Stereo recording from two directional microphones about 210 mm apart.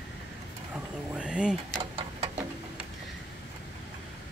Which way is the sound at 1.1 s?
5° right (ahead or behind).